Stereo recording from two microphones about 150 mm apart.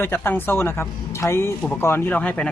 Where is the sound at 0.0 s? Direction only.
15° left (ahead or behind).